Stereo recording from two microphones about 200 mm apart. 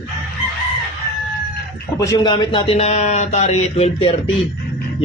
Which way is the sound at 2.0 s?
20° left (ahead or behind).